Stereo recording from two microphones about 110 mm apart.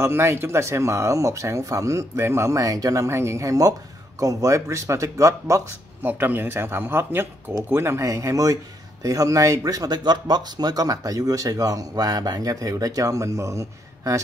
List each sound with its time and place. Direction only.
0.0 s speech: 25° right (ahead or behind)
6.0 s speech: 15° right (ahead or behind)